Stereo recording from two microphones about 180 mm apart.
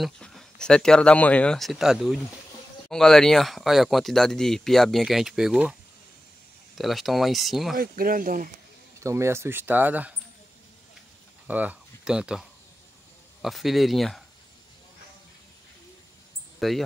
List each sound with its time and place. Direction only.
0.0 s speech: centre (ahead or behind)
6.8 s speech: centre (ahead or behind)
7.7 s speech: 55° right (ahead or behind)
9.0 s speech: 15° right (ahead or behind)
11.4 s speech: 10° right (ahead or behind)
16.5 s a sound: centre (ahead or behind)